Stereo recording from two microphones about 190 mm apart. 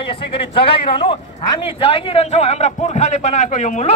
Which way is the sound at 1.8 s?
30° left (ahead or behind).